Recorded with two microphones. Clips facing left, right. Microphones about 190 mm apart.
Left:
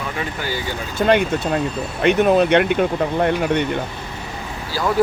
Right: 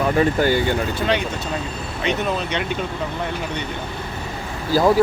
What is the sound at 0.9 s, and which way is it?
Speech, 50° left (ahead or behind).